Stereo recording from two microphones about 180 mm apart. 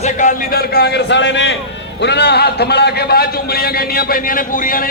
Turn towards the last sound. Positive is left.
turn(degrees=50)  # may be behind; listen again after turning